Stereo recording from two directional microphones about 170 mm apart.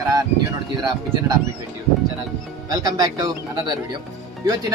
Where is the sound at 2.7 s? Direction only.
20° right (ahead or behind).